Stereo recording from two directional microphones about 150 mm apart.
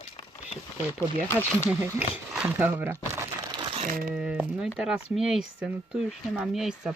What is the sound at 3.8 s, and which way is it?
Speech, 70° right (ahead or behind).